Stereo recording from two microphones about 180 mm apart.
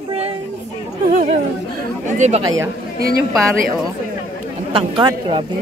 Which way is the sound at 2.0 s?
40° right (ahead or behind).